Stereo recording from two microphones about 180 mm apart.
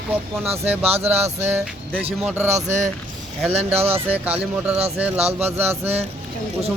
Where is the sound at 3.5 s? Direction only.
35° right (ahead or behind).